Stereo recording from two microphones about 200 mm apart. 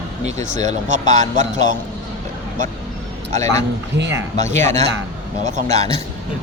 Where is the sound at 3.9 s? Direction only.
60° right (ahead or behind).